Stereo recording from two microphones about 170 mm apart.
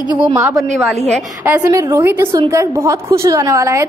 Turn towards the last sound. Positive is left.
turn(degrees=-20)  # may be behind; listen again after turning